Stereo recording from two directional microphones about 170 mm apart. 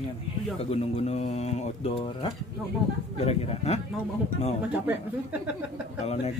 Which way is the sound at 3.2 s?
40° left (ahead or behind).